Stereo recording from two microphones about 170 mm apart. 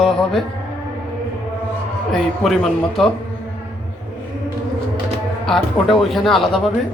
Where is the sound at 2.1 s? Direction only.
Centre (ahead or behind).